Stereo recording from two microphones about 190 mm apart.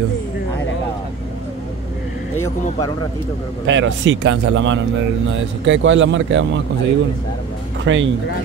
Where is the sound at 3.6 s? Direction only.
75° right (ahead or behind).